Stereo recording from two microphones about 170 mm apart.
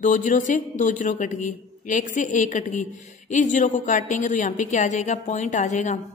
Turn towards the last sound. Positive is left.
turn(degrees=45)  # may be behind; listen again after turning